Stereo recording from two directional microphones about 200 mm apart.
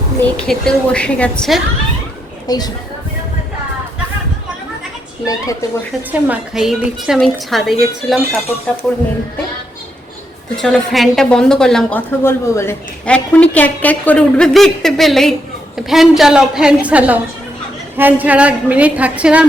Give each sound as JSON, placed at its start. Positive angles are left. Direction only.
{"t": 0.3, "sound": "a woman's voice", "side_deg": 5}
{"t": 2.5, "sound": "speech", "side_deg": 20}
{"t": 5.2, "sound": "a woman's voice", "side_deg": 15}
{"t": 6.1, "sound": "a woman's voice", "side_deg": -10}
{"t": 10.6, "sound": "a woman's voice", "side_deg": 0}